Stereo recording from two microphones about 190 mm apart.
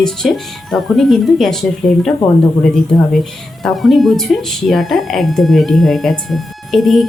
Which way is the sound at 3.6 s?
Centre (ahead or behind).